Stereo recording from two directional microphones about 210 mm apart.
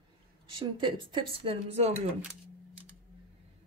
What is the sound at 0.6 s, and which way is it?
Speech, 25° right (ahead or behind).